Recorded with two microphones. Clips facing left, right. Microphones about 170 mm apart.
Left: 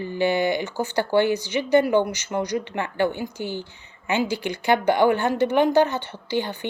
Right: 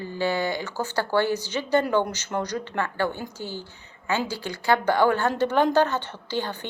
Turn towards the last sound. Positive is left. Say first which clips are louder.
# left 3 dB
turn(degrees=15)  # may be behind; listen again after turning